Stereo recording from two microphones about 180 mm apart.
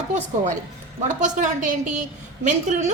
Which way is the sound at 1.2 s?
45° right (ahead or behind).